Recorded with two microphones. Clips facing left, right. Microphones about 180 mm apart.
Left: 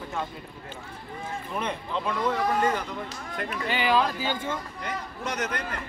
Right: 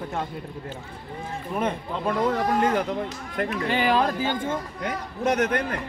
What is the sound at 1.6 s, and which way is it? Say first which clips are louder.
Speech: right 4 dB; 45° right (ahead or behind).